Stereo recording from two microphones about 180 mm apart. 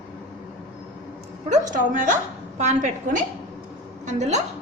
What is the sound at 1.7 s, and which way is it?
A woman's voice, 45° right (ahead or behind).